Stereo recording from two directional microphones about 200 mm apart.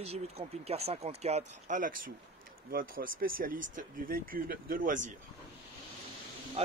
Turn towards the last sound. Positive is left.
turn(degrees=-30)  # may be behind; listen again after turning